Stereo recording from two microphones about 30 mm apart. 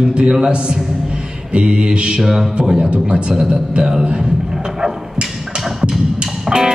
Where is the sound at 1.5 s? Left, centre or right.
Right.